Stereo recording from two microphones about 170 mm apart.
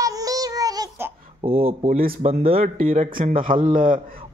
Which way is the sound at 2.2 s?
35° right (ahead or behind).